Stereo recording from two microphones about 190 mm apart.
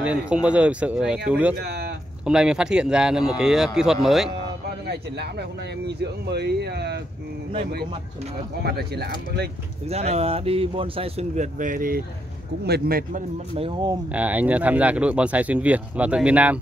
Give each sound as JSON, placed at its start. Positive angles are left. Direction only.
{"t": 0.0, "sound": "speech", "side_deg": -5}
{"t": 5.9, "sound": "speech", "side_deg": -60}
{"t": 8.6, "sound": "speech", "side_deg": -60}
{"t": 9.8, "sound": "speech", "side_deg": -35}
{"t": 13.6, "sound": "speech", "side_deg": -25}
{"t": 14.1, "sound": "speech", "side_deg": -10}